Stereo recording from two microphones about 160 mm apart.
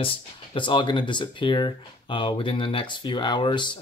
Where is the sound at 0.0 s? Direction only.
30° left (ahead or behind).